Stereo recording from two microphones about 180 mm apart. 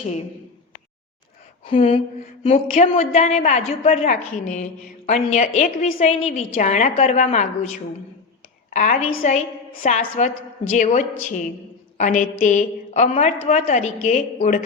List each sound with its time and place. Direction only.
1.6 s a woman's voice: 30° left (ahead or behind)
8.7 s a woman's voice: 45° left (ahead or behind)